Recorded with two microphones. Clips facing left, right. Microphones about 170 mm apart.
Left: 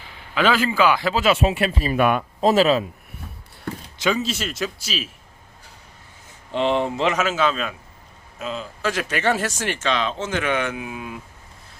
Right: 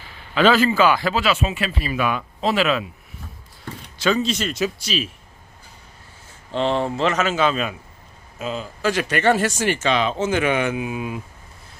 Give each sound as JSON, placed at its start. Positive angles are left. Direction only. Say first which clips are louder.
{"t": 0.3, "sound": "speech", "louder": "right 3 dB", "side_deg": 10}
{"t": 1.8, "sound": "speech", "louder": "left 4 dB", "side_deg": 50}
{"t": 3.9, "sound": "a sound", "louder": "right 2 dB", "side_deg": 15}
{"t": 4.2, "sound": "speech", "louder": "right 4 dB", "side_deg": 5}
{"t": 6.5, "sound": "speech", "louder": "even", "side_deg": 15}
{"t": 7.3, "sound": "speech", "louder": "right 1 dB", "side_deg": 0}